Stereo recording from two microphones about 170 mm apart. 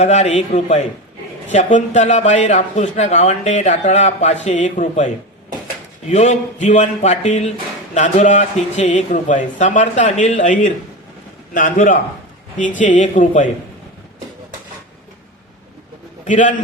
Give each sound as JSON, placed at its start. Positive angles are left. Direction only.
{"t": 0.0, "sound": "a man's voice", "side_deg": 40}
{"t": 16.2, "sound": "a man's voice", "side_deg": 50}